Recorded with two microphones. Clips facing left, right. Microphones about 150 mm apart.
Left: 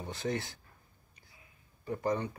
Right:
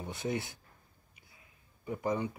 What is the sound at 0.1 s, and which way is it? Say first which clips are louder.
Speech: even; 20° right (ahead or behind).